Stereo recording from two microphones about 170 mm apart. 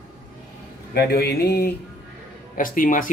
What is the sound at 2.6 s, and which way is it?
Speech, 55° left (ahead or behind).